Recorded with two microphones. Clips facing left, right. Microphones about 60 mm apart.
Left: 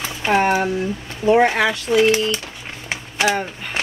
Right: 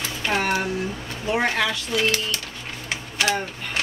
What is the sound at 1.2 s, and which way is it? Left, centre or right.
Speech, left.